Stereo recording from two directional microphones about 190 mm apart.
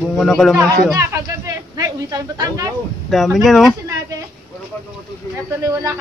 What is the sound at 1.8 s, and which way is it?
Speech, 20° right (ahead or behind).